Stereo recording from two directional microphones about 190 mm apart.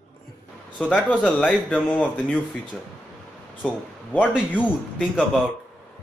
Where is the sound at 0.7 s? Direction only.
5° left (ahead or behind).